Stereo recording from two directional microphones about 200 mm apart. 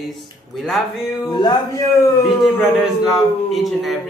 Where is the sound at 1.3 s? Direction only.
20° left (ahead or behind).